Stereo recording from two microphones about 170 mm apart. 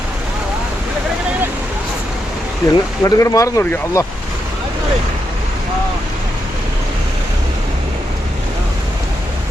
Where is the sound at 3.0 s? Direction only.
20° left (ahead or behind).